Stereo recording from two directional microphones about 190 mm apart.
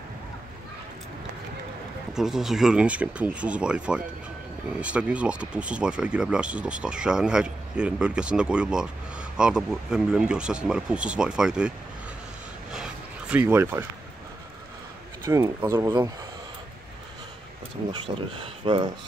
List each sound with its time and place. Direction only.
2.1 s speech: centre (ahead or behind)
12.7 s a sound: 5° right (ahead or behind)
15.2 s speech: 15° right (ahead or behind)
17.9 s speech: 30° right (ahead or behind)